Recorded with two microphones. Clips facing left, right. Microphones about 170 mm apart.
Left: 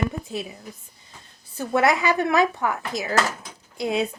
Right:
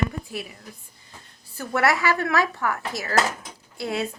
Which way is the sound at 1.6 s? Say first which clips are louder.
Left 2 dB; 20° left (ahead or behind).